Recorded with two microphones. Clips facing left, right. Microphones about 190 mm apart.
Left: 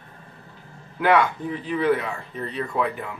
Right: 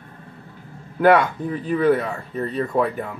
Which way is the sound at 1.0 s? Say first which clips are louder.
Right 4 dB; 45° right (ahead or behind).